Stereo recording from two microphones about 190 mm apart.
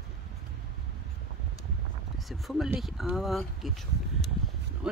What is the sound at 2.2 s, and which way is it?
Speech, centre (ahead or behind).